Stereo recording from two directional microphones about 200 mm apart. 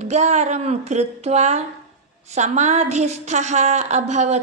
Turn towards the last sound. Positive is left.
turn(degrees=-35)  # may be behind; listen again after turning